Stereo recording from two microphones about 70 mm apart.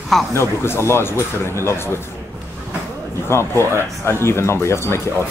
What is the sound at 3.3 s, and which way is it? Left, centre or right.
Speech, left.